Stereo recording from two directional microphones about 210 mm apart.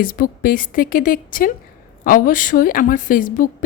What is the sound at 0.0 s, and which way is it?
A woman's voice, 40° left (ahead or behind).